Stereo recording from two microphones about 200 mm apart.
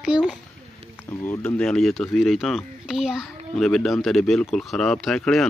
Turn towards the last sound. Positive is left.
turn(degrees=0)  # may be behind; listen again after turning